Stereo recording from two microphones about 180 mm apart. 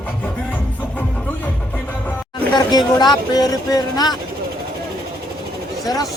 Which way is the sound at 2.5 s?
25° left (ahead or behind).